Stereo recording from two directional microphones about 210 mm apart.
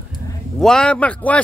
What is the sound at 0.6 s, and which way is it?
Speech, 5° left (ahead or behind).